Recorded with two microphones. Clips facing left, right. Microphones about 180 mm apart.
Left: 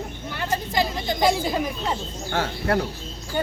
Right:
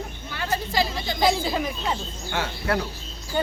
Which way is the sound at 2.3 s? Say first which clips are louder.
Left 2 dB; 45° left (ahead or behind).